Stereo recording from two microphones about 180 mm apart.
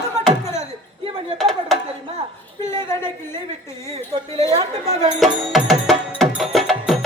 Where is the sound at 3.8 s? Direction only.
35° right (ahead or behind).